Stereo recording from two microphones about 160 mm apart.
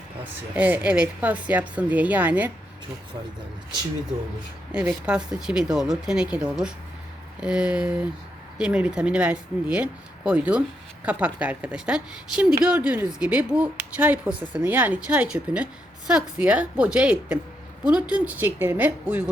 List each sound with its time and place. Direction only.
0.5 s speech: 10° right (ahead or behind)
4.7 s speech: 5° right (ahead or behind)